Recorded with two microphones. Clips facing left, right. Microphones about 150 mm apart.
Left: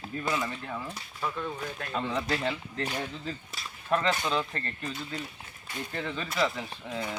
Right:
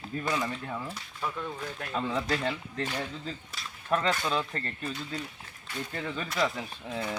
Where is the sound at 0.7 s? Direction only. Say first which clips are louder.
Even; 5° right (ahead or behind).